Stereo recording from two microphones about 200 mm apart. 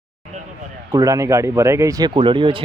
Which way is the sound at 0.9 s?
15° right (ahead or behind).